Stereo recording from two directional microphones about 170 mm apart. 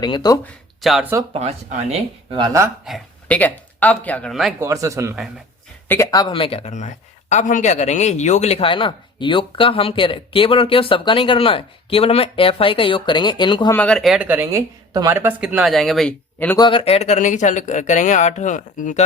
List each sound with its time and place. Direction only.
0.0 s speech: 25° left (ahead or behind)
0.8 s speech: centre (ahead or behind)
1.3 s speech: 40° right (ahead or behind)
2.4 s speech: 20° right (ahead or behind)
2.8 s speech: 5° left (ahead or behind)
4.6 s speech: 20° right (ahead or behind)
5.9 s speech: 20° left (ahead or behind)
13.7 s speech: 5° left (ahead or behind)
16.6 s speech: 30° left (ahead or behind); by 19.0 s 50° left (ahead or behind)